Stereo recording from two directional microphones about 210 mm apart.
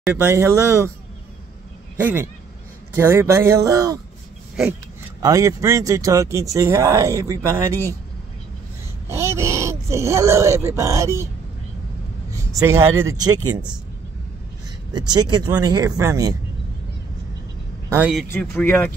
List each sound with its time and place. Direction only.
0.0 s speech: 10° right (ahead or behind)
2.0 s speech: 10° right (ahead or behind)
5.2 s speech: 15° right (ahead or behind)
9.1 s speech: 15° right (ahead or behind)
12.3 s speech: 15° right (ahead or behind)
14.9 s speech: 20° right (ahead or behind)
17.8 s speech: 10° right (ahead or behind)
18.3 s speech: 5° left (ahead or behind)